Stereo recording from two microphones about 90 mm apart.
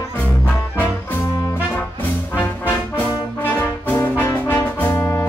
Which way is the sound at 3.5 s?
25° left (ahead or behind).